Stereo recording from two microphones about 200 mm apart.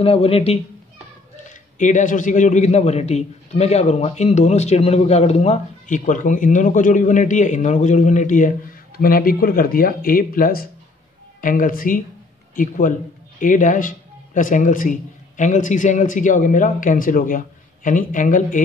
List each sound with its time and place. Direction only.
0.0 s speech: 30° left (ahead or behind)
1.8 s a man's voice: 40° left (ahead or behind)